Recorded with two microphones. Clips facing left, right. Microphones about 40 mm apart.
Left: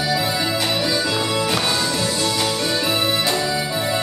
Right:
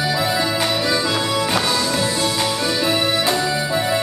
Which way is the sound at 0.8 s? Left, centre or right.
Right.